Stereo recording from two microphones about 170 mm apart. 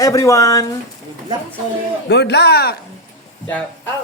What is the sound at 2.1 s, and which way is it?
Speech, 80° left.